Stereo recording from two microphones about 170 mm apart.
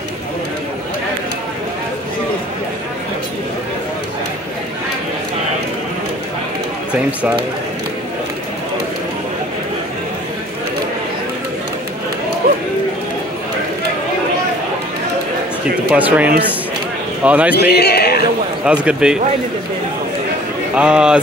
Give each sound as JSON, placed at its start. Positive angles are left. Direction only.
{"t": 6.9, "sound": "speech", "side_deg": -10}
{"t": 12.4, "sound": "a sound", "side_deg": -60}
{"t": 15.9, "sound": "speech", "side_deg": -10}
{"t": 17.6, "sound": "speech", "side_deg": 70}
{"t": 18.7, "sound": "a man's voice", "side_deg": -5}
{"t": 20.7, "sound": "a man's voice", "side_deg": -5}